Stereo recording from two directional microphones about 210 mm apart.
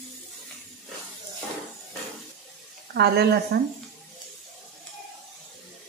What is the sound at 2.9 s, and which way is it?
Speech, 50° right (ahead or behind).